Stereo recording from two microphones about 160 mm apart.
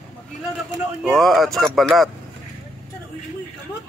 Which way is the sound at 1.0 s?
Centre (ahead or behind).